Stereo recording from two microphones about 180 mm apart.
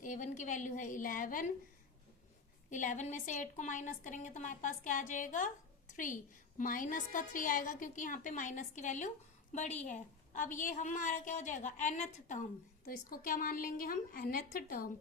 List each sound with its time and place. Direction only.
0.0 s a woman's voice: 45° left (ahead or behind)
2.6 s a woman's voice: 45° left (ahead or behind)
6.6 s a woman's voice: 50° left (ahead or behind)